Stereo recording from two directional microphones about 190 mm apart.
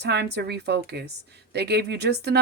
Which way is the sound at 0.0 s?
60° right (ahead or behind).